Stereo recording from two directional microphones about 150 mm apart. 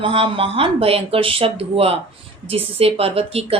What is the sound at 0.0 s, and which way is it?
Speech, 35° right (ahead or behind).